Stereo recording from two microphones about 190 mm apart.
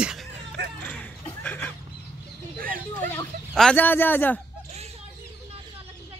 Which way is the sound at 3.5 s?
5° left (ahead or behind).